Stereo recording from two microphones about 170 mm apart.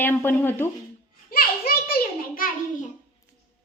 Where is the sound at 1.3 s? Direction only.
60° left (ahead or behind).